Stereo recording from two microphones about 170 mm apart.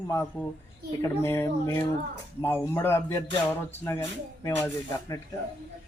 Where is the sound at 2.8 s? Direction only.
15° left (ahead or behind).